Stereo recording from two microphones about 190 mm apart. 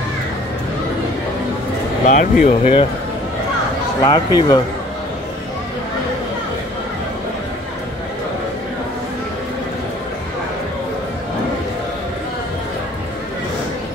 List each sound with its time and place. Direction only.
2.0 s speech: 35° left (ahead or behind)
4.0 s speech: 25° left (ahead or behind)